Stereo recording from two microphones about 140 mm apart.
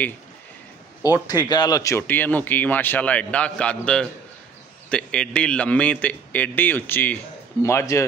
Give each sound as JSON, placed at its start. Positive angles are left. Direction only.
{"t": 1.0, "sound": "speech", "side_deg": 25}